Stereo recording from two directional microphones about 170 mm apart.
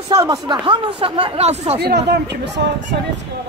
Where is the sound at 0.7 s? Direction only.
30° right (ahead or behind).